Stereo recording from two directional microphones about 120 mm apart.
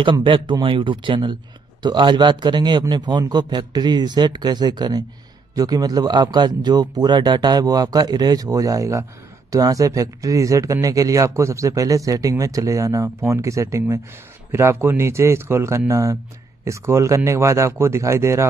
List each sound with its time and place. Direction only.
0.0 s speech: 45° right (ahead or behind); by 18.5 s 25° right (ahead or behind)